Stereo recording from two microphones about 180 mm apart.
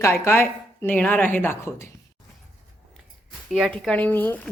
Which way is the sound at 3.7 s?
5° left (ahead or behind).